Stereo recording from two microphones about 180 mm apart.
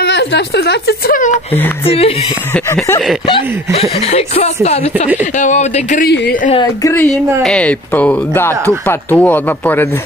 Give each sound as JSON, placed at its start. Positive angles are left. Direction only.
{"t": 0.0, "sound": "speech", "side_deg": 75}
{"t": 1.9, "sound": "a woman's voice", "side_deg": 30}
{"t": 2.5, "sound": "speech", "side_deg": 10}
{"t": 3.3, "sound": "a woman's voice", "side_deg": 30}
{"t": 6.8, "sound": "speech", "side_deg": 15}